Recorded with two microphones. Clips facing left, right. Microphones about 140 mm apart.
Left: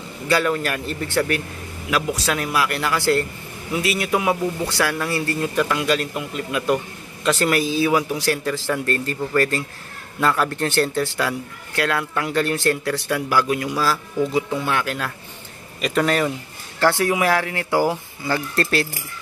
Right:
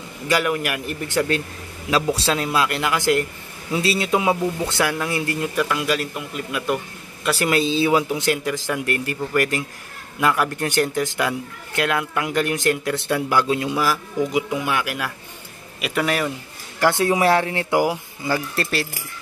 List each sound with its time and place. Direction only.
0.3 s a man's voice: 15° right (ahead or behind)
5.4 s a man's voice: centre (ahead or behind)
7.5 s a man's voice: 25° right (ahead or behind); by 16.3 s 5° right (ahead or behind)
16.8 s a man's voice: 20° right (ahead or behind)